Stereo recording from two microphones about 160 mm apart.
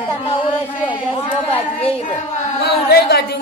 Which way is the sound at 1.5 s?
35° left (ahead or behind).